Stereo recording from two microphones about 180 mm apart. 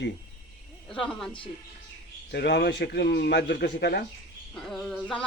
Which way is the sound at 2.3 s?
70° left (ahead or behind).